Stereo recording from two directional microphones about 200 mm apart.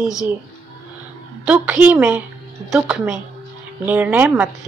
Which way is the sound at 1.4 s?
5° right (ahead or behind).